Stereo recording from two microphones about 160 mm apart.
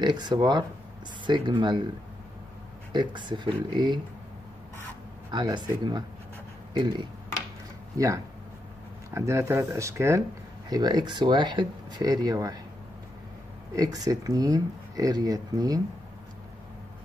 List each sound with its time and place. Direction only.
0.0 s speech: 25° right (ahead or behind)
2.9 s speech: 30° right (ahead or behind)
5.3 s speech: 30° right (ahead or behind)
9.1 s speech: 15° right (ahead or behind)
13.7 s speech: 25° right (ahead or behind)